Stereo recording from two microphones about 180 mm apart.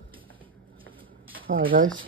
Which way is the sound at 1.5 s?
50° right (ahead or behind).